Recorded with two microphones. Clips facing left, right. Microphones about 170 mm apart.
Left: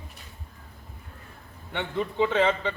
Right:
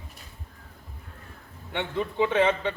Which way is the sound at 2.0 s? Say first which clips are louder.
Even; 10° right (ahead or behind).